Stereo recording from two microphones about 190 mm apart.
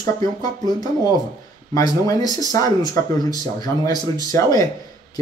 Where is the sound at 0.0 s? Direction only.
20° left (ahead or behind).